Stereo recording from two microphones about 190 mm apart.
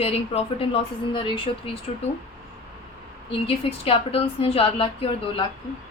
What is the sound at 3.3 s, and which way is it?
A woman's voice, 30° left (ahead or behind).